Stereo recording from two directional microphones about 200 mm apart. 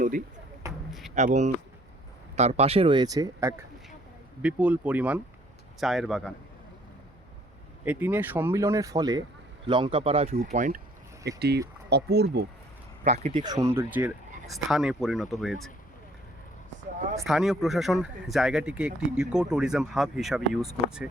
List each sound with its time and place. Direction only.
1.1 s speech: 35° right (ahead or behind); by 3.5 s 20° right (ahead or behind)
4.4 s speech: 5° right (ahead or behind)
7.9 s speech: 10° right (ahead or behind); by 10.8 s 40° right (ahead or behind)
11.3 s speech: 55° right (ahead or behind)
13.3 s speech: 20° right (ahead or behind); by 15.7 s centre (ahead or behind)
17.2 s speech: centre (ahead or behind)